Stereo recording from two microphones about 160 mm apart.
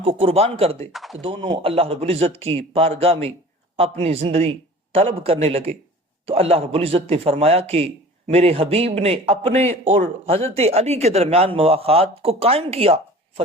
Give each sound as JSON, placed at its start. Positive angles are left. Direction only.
{"t": 0.0, "sound": "a man's voice", "side_deg": -35}
{"t": 0.9, "sound": "speech", "side_deg": 0}
{"t": 1.2, "sound": "a man's voice", "side_deg": -35}